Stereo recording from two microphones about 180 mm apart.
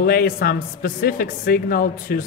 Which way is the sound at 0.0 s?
55° left (ahead or behind).